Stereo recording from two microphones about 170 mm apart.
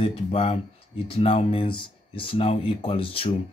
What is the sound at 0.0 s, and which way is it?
Speech, 35° left (ahead or behind).